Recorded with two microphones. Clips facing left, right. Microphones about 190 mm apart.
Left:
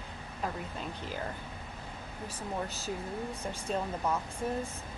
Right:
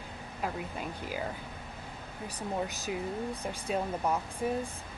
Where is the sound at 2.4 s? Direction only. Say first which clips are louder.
Right 3 dB; 15° right (ahead or behind).